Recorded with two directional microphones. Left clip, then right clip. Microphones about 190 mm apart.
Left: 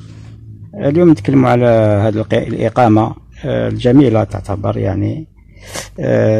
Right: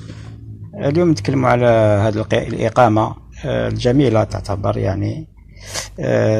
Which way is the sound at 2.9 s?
50° left (ahead or behind).